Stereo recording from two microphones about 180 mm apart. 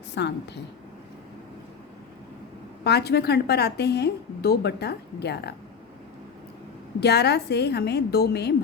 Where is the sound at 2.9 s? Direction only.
65° left (ahead or behind).